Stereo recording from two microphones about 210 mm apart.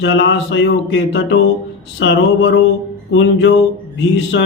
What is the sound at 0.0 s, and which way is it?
Mantra, 60° left (ahead or behind).